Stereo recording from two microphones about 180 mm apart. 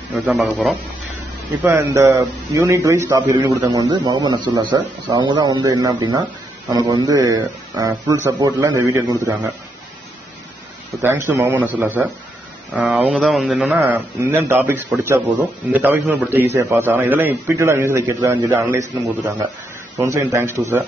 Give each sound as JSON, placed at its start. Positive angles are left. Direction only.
{"t": 0.1, "sound": "speech", "side_deg": 0}
{"t": 1.6, "sound": "a man's voice", "side_deg": -15}
{"t": 11.0, "sound": "a man's voice", "side_deg": -15}
{"t": 20.0, "sound": "a man's voice", "side_deg": -15}